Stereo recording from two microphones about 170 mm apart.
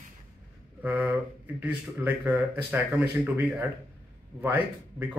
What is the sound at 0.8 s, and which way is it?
Speech, 10° right (ahead or behind).